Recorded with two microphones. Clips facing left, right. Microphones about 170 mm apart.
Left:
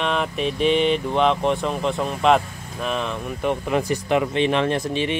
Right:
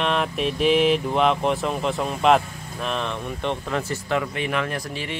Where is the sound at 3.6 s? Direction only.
15° left (ahead or behind).